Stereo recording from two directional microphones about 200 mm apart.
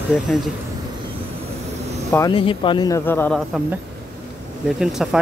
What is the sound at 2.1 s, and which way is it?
Speech, 20° left (ahead or behind).